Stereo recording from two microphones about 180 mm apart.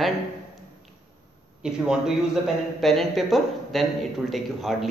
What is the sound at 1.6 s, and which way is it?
A man's voice, 5° right (ahead or behind).